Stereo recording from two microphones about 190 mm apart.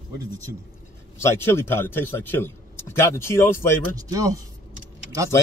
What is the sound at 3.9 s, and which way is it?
Speech, 15° right (ahead or behind).